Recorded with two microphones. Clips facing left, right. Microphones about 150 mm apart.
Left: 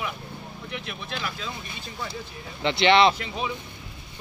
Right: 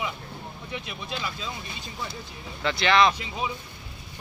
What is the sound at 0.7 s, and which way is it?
Speech, 15° right (ahead or behind).